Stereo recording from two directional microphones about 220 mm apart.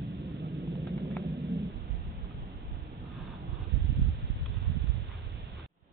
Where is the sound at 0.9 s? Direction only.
Centre (ahead or behind).